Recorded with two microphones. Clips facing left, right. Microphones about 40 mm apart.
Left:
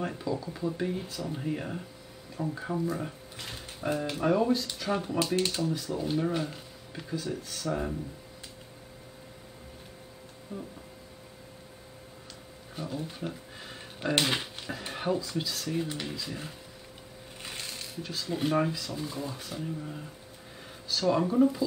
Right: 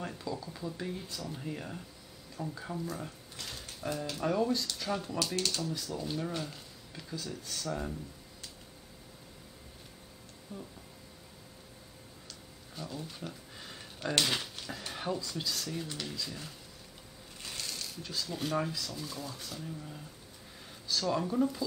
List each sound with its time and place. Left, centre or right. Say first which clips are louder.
0.0 s speech: left 6 dB; centre
10.5 s speech: left 5 dB; centre
12.7 s speech: left 6 dB; left
17.4 s music: left 1 dB; left
18.1 s speech: left 5 dB; left